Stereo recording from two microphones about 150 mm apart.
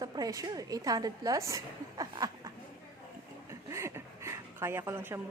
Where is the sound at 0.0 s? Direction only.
25° right (ahead or behind).